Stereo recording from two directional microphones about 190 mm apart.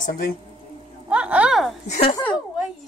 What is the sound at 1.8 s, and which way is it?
Speech, 35° left (ahead or behind).